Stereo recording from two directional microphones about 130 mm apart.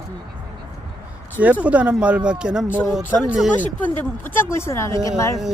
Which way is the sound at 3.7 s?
15° left (ahead or behind).